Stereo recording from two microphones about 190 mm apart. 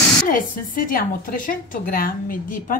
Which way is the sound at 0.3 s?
45° left (ahead or behind).